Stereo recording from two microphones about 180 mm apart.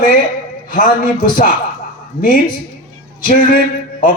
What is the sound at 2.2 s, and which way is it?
A man's voice, 45° left (ahead or behind).